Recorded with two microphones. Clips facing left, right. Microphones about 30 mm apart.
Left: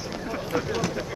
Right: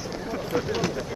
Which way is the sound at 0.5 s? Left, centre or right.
Centre.